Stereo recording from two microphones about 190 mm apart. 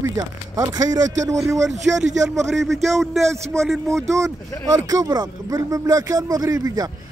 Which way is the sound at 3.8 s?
15° right (ahead or behind).